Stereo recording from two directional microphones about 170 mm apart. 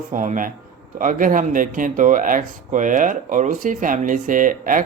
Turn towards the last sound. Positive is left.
turn(degrees=-50)  # may be behind; listen again after turning